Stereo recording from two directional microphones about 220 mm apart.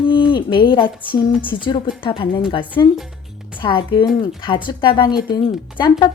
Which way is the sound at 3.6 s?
20° left (ahead or behind).